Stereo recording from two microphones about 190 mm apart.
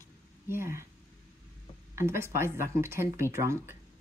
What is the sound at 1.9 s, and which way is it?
Speech, 15° right (ahead or behind).